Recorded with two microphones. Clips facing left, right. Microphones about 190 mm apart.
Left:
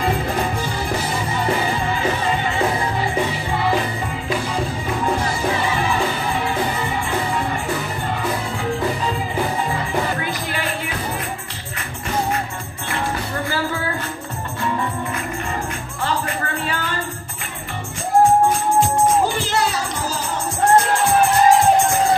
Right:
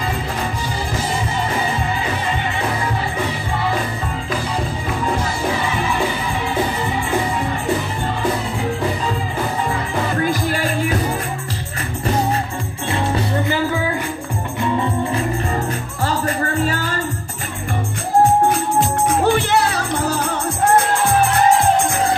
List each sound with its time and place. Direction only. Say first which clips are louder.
10.2 s music: right 6 dB; 40° right (ahead or behind)
12.9 s music: right 4 dB; 25° right (ahead or behind)
16.3 s music: right 5 dB; 40° right (ahead or behind)
19.0 s music: right 2 dB; 65° right (ahead or behind)